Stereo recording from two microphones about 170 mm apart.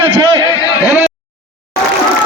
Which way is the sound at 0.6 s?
20° left (ahead or behind).